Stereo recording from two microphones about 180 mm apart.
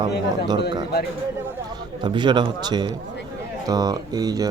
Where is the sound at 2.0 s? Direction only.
25° right (ahead or behind).